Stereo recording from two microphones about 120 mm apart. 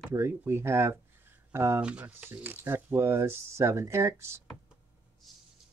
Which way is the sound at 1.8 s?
10° right (ahead or behind).